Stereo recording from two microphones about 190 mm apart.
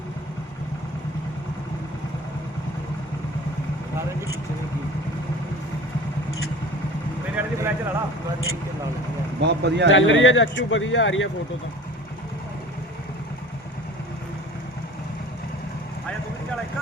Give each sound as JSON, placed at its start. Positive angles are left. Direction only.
{"t": 7.3, "sound": "a sound", "side_deg": -15}
{"t": 9.4, "sound": "speech", "side_deg": -65}
{"t": 9.9, "sound": "speech", "side_deg": 80}